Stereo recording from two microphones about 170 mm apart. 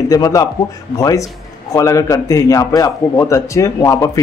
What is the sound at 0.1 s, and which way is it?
A man's voice, 20° left (ahead or behind).